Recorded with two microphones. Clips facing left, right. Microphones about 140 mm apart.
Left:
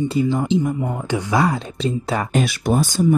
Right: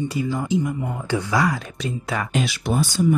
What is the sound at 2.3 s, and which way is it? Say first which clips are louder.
Speech: left 4 dB; 45° left (ahead or behind).